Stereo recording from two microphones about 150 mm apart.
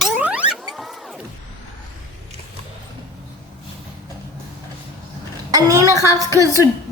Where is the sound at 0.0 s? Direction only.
10° right (ahead or behind).